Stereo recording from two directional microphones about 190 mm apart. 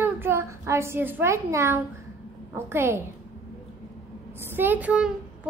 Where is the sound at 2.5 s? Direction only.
15° right (ahead or behind).